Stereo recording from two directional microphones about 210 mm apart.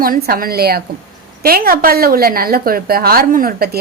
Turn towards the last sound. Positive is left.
turn(degrees=-45)  # may be behind; listen again after turning